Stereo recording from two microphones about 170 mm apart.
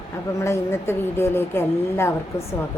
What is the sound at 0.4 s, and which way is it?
A woman's voice, 15° left (ahead or behind).